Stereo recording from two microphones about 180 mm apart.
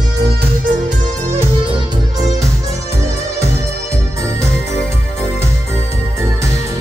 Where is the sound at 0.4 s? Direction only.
50° right (ahead or behind).